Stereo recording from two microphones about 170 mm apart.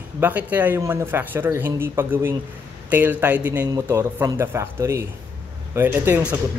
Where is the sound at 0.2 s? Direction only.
10° right (ahead or behind).